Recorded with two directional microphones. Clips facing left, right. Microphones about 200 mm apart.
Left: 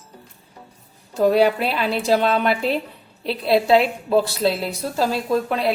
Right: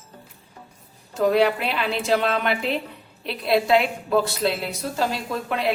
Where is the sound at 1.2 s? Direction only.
35° left (ahead or behind).